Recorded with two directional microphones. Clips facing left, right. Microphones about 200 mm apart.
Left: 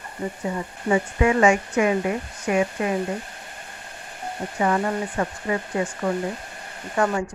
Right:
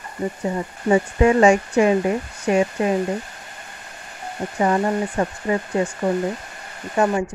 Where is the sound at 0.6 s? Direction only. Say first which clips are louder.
Right 4 dB; 30° right (ahead or behind).